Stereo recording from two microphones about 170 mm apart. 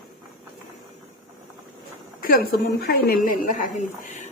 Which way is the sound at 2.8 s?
65° left (ahead or behind).